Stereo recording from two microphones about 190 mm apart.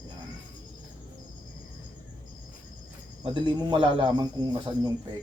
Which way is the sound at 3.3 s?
25° right (ahead or behind).